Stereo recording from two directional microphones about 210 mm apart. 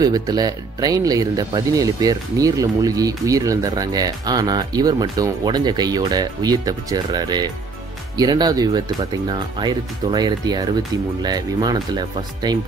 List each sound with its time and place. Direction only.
0.0 s speech: 20° right (ahead or behind)